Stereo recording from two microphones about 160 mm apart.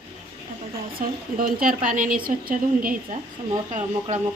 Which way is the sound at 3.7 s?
50° right (ahead or behind).